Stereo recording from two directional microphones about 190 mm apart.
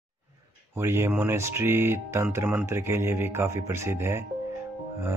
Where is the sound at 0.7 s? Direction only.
15° right (ahead or behind).